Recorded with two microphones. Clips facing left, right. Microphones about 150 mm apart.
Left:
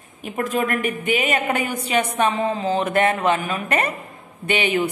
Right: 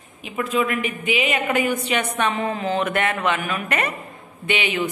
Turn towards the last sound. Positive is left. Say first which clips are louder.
# left 3 dB
turn(degrees=40)  # may be behind; listen again after turning